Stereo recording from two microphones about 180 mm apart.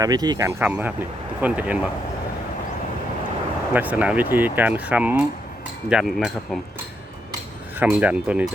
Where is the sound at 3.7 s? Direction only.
10° right (ahead or behind).